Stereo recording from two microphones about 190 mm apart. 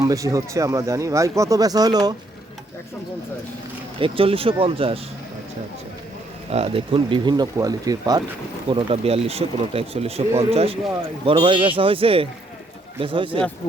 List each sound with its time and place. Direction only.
0.0 s speech: 15° right (ahead or behind)
4.0 s speech: 30° right (ahead or behind)
6.5 s speech: 30° right (ahead or behind)
8.7 s speech: 30° right (ahead or behind)